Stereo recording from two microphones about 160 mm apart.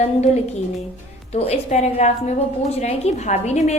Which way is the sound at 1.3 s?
40° left (ahead or behind).